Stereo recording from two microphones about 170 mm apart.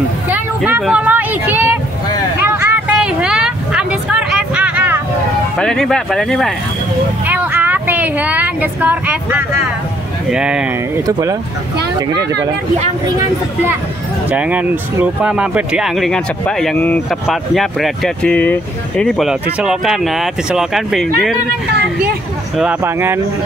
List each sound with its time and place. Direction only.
0.7 s a sound: 10° right (ahead or behind)
5.6 s speech: 5° left (ahead or behind)
7.2 s speech: 10° right (ahead or behind)
11.1 s speech: 20° right (ahead or behind)
14.3 s speech: 10° right (ahead or behind)
21.6 s speech: 75° right (ahead or behind)
22.6 s speech: 10° right (ahead or behind)